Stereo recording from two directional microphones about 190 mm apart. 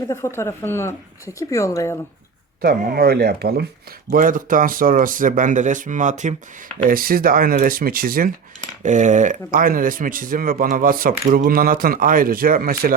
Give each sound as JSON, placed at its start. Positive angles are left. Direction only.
{"t": 0.1, "sound": "speech", "side_deg": 15}
{"t": 2.6, "sound": "speech", "side_deg": -50}